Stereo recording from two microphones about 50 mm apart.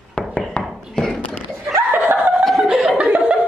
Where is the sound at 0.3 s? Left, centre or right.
Left.